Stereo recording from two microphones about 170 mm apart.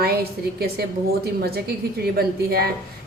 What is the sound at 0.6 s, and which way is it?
A woman's voice, 65° right (ahead or behind).